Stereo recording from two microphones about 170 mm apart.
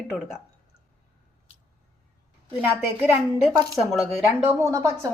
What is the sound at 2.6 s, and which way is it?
Speech, 10° right (ahead or behind).